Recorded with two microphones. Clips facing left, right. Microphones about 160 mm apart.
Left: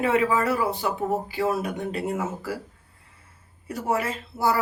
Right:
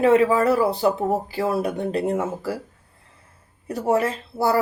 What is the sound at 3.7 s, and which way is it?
Speech, 35° right (ahead or behind).